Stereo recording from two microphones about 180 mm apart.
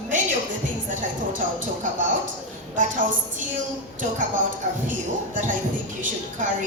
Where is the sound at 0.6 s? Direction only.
45° right (ahead or behind).